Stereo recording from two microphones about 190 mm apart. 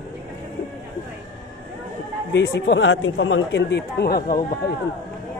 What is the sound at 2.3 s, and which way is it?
Speech, 70° left (ahead or behind).